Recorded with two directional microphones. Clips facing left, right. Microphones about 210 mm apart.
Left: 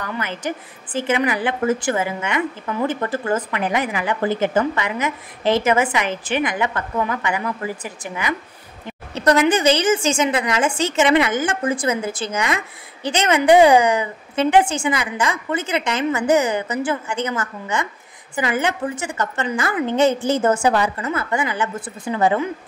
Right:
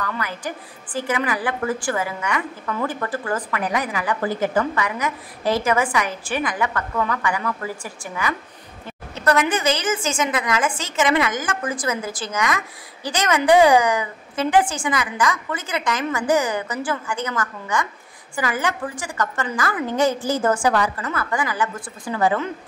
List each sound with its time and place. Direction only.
0.0 s a woman's voice: 20° left (ahead or behind)
9.1 s a woman's voice: 30° left (ahead or behind)